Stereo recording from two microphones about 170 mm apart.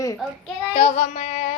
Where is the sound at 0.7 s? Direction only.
45° left (ahead or behind).